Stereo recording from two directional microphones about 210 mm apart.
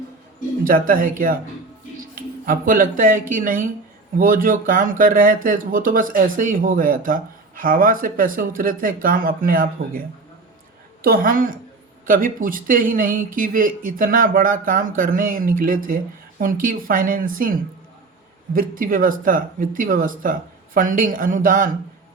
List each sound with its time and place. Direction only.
0.6 s speech: 40° right (ahead or behind)
11.0 s a woman's voice: 45° right (ahead or behind)